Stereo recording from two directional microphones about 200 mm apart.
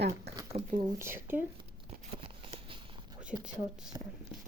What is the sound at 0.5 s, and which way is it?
Speech, 40° right (ahead or behind).